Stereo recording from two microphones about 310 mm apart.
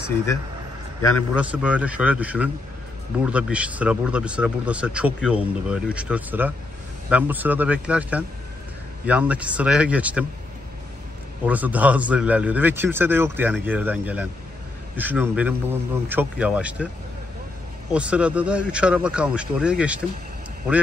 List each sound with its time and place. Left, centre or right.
1.3 s speech: centre
11.4 s speech: centre
17.9 s speech: centre